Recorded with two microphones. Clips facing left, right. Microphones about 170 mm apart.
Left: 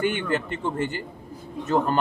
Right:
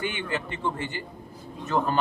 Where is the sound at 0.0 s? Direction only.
50° left (ahead or behind).